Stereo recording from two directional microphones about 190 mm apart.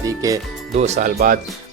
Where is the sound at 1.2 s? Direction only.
45° right (ahead or behind).